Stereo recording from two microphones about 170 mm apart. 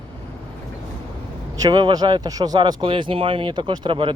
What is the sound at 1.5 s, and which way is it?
Speech, 20° right (ahead or behind).